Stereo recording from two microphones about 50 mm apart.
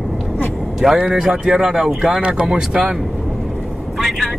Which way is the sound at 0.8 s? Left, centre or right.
Centre.